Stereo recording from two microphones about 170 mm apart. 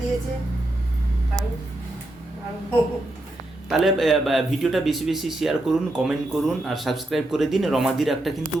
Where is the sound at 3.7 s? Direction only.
Centre (ahead or behind).